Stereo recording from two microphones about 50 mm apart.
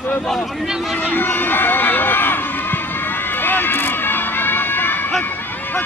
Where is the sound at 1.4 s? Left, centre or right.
Left.